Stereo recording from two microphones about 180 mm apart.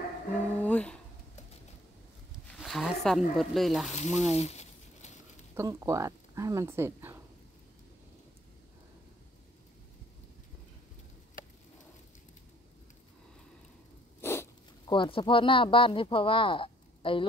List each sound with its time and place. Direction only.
0.6 s a sound: 10° left (ahead or behind)
2.5 s speech: centre (ahead or behind)
3.9 s speech: 40° left (ahead or behind)
4.4 s crumpling: 35° left (ahead or behind)
5.5 s speech: 15° right (ahead or behind)
14.2 s zipper: 15° left (ahead or behind)
14.9 s speech: 30° left (ahead or behind)